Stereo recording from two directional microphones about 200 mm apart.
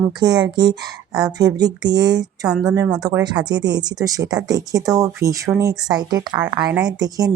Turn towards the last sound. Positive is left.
turn(degrees=-20)  # may be behind; listen again after turning